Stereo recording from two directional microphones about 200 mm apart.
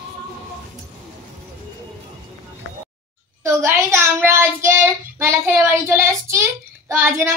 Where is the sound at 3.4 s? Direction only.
15° right (ahead or behind).